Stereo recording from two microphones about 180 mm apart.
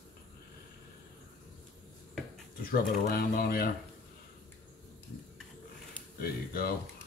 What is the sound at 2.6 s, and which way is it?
Speech, 55° left (ahead or behind).